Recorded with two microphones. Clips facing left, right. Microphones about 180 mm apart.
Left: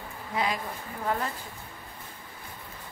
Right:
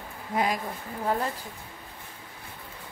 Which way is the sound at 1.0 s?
35° right (ahead or behind).